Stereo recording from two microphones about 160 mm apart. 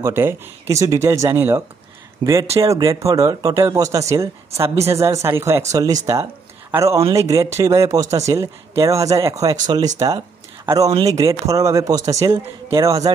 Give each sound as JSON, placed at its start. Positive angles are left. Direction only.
{"t": 0.0, "sound": "speech", "side_deg": -15}
{"t": 2.2, "sound": "speech", "side_deg": -25}